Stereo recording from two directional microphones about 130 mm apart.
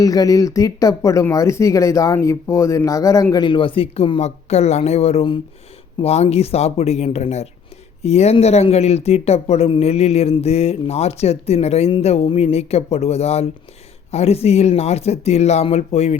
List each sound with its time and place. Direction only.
0.0 s speech: 30° left (ahead or behind)
3.3 s speech: 35° left (ahead or behind); by 16.1 s 55° left (ahead or behind)